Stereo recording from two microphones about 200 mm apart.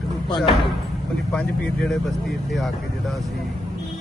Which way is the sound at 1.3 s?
5° left (ahead or behind).